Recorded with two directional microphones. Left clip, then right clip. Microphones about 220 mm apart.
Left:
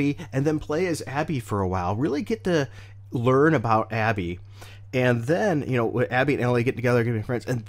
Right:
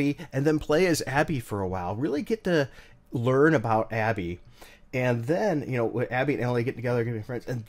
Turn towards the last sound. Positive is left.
turn(degrees=35)  # may be behind; listen again after turning